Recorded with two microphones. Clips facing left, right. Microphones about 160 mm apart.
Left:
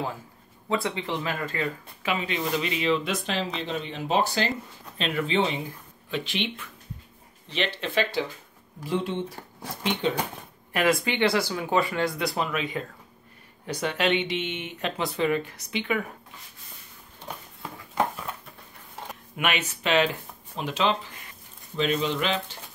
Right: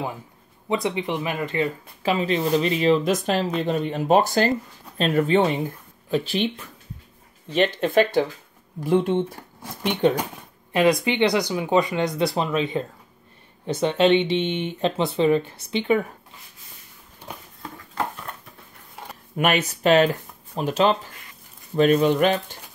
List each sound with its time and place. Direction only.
0.7 s speech: 20° right (ahead or behind)
2.0 s speech: 35° right (ahead or behind); by 9.2 s 55° right (ahead or behind)
10.7 s speech: 20° right (ahead or behind)
17.9 s a sound: 5° left (ahead or behind)
19.3 s speech: 40° right (ahead or behind)